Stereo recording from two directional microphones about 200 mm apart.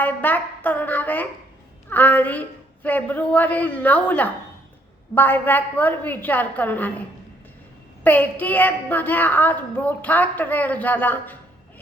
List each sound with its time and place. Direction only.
0.0 s a woman's voice: 10° left (ahead or behind)
8.0 s a woman's voice: 10° left (ahead or behind)